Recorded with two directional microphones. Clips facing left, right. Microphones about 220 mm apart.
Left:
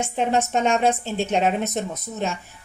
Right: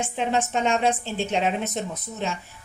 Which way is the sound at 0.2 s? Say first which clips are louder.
Left 3 dB; 45° left (ahead or behind).